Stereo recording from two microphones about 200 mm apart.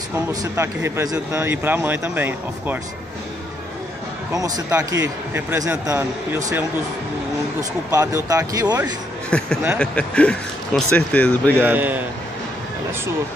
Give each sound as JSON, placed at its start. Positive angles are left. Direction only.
{"t": 0.3, "sound": "speech", "side_deg": -15}
{"t": 4.3, "sound": "speech", "side_deg": -15}
{"t": 7.9, "sound": "speech", "side_deg": -15}
{"t": 9.3, "sound": "speech", "side_deg": 5}
{"t": 11.6, "sound": "speech", "side_deg": -10}